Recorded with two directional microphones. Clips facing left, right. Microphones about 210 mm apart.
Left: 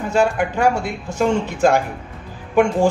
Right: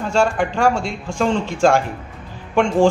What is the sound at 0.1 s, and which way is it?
Speech, 5° left (ahead or behind).